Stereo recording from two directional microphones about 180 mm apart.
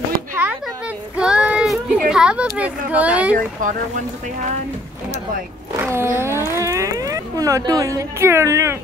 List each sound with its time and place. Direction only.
1.1 s child singing: 5° right (ahead or behind)
2.0 s a sound: 5° right (ahead or behind)
2.9 s speech: 5° right (ahead or behind)
3.3 s speech: 45° right (ahead or behind)
5.8 s speech: 15° right (ahead or behind)